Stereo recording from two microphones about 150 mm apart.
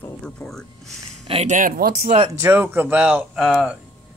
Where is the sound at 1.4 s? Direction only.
65° right (ahead or behind).